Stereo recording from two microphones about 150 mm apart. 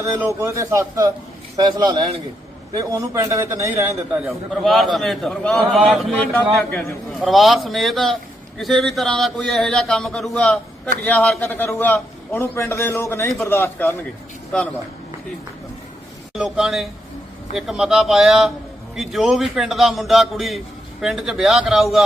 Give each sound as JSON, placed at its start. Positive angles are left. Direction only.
{"t": 0.0, "sound": "a man's voice", "side_deg": -20}
{"t": 2.7, "sound": "a man's voice", "side_deg": -20}
{"t": 16.3, "sound": "a man's voice", "side_deg": -5}